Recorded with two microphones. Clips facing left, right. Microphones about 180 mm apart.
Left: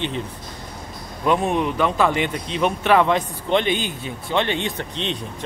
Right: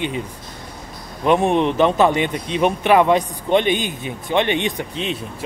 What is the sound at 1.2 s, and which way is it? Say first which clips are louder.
Speech: right 4 dB; 25° right (ahead or behind).